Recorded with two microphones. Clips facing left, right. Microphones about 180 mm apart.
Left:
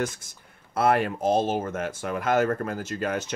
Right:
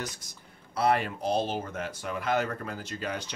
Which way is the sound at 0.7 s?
50° left (ahead or behind).